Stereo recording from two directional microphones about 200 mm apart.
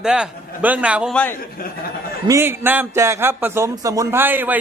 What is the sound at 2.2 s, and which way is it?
A man's voice, 15° right (ahead or behind).